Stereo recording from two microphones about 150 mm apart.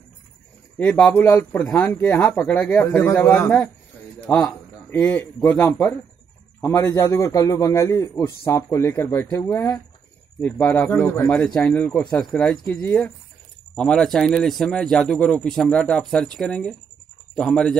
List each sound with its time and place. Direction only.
0.7 s speech: 10° left (ahead or behind)
1.2 s a man's voice: 20° left (ahead or behind)
1.6 s a man's voice: centre (ahead or behind)
1.9 s speech: 15° left (ahead or behind)
4.9 s a man's voice: 20° left (ahead or behind)
10.4 s a man's voice: 10° left (ahead or behind)